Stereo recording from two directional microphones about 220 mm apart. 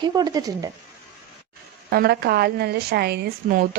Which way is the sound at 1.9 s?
45° right (ahead or behind).